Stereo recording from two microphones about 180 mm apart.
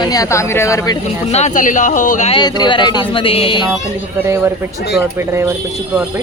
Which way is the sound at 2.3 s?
25° left (ahead or behind).